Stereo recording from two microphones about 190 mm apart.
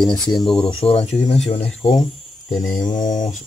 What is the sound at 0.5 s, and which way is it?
Speech, 30° left (ahead or behind).